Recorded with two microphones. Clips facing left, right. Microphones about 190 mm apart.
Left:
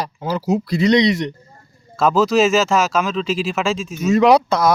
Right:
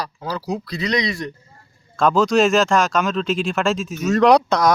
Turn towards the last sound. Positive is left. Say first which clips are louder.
# left 1 dB
turn(degrees=5)  # may be behind; listen again after turning